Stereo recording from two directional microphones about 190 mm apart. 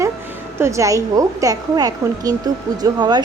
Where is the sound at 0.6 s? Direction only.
15° right (ahead or behind).